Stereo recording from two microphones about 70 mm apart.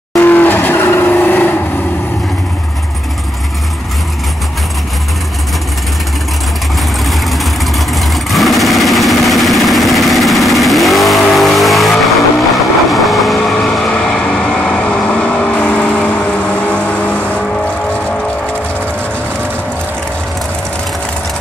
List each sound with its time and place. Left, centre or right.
0.2 s vehicle: left
7.1 s vehicle: centre